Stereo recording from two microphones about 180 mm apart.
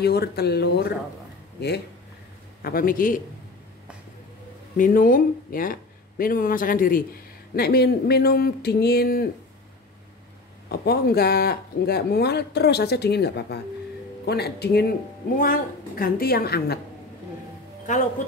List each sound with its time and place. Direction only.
0.0 s speech: 65° left (ahead or behind)
2.6 s speech: 55° left (ahead or behind)
4.7 s speech: 50° left (ahead or behind)
10.7 s speech: 60° left (ahead or behind)
15.3 s speech: 50° left (ahead or behind)